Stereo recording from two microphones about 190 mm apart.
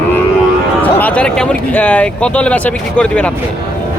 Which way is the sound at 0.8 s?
10° left (ahead or behind).